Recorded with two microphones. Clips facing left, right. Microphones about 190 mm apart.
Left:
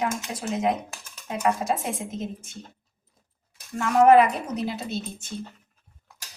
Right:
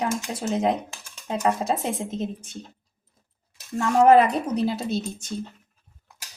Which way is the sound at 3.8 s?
30° right (ahead or behind).